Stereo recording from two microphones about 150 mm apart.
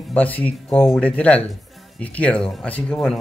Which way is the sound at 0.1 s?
10° left (ahead or behind).